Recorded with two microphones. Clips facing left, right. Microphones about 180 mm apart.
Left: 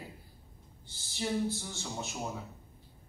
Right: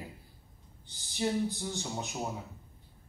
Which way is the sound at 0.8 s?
15° right (ahead or behind).